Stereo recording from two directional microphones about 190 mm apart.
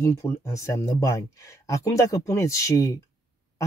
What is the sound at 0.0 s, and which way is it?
Speech, 15° left (ahead or behind).